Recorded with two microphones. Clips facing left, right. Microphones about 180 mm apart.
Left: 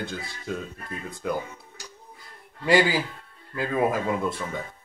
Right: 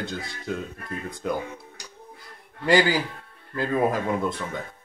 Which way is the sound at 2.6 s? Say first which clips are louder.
Right 1 dB; centre (ahead or behind).